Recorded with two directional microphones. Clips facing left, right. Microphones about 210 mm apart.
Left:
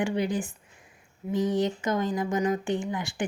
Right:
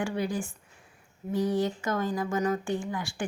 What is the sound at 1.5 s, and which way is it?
A woman's voice, 20° left (ahead or behind).